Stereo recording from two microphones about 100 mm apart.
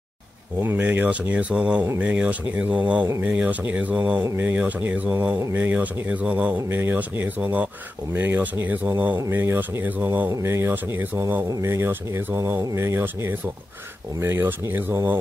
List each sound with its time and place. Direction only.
0.6 s speech: 20° right (ahead or behind)